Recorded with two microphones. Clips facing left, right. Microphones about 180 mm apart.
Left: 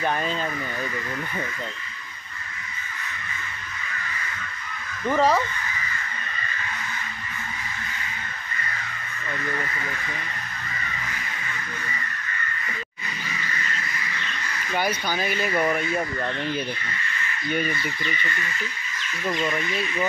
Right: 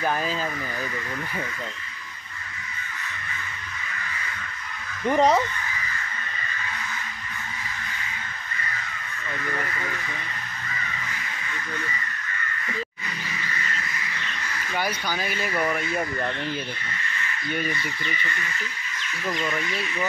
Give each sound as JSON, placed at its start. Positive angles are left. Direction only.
{"t": 0.0, "sound": "speech", "side_deg": -5}
{"t": 5.0, "sound": "speech", "side_deg": -20}
{"t": 15.0, "sound": "speech", "side_deg": 15}
{"t": 19.4, "sound": "speech", "side_deg": 10}